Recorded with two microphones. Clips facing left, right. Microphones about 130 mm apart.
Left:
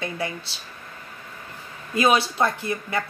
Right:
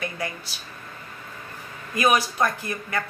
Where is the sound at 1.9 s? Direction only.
25° left (ahead or behind).